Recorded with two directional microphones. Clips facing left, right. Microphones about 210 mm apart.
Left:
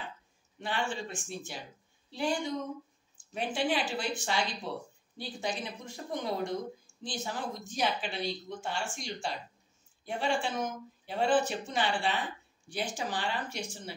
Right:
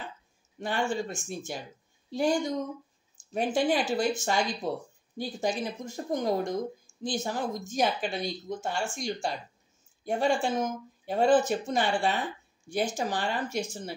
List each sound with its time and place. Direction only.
0.6 s speech: 45° right (ahead or behind)